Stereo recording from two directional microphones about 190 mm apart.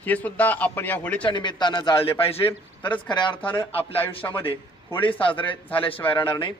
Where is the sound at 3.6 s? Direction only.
30° left (ahead or behind).